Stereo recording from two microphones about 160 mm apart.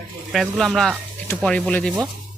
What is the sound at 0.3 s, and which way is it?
Speech, centre (ahead or behind).